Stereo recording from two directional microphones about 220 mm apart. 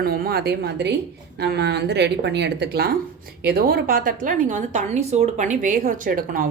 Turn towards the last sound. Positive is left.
turn(degrees=-40)  # may be behind; listen again after turning